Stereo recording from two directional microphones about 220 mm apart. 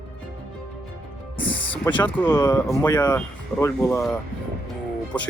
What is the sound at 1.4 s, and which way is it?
Speech, 5° left (ahead or behind).